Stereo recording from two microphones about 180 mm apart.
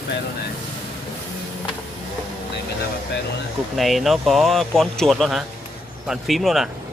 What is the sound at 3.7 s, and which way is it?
Speech, centre (ahead or behind).